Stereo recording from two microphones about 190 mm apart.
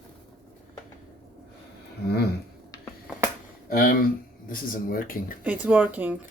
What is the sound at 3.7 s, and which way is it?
Speech, 50° left (ahead or behind).